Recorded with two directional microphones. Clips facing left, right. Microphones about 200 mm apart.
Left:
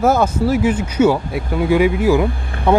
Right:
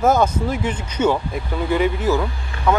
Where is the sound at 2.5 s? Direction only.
55° left (ahead or behind).